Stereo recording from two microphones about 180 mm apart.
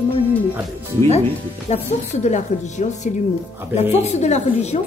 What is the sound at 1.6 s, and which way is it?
Speech, 40° left (ahead or behind).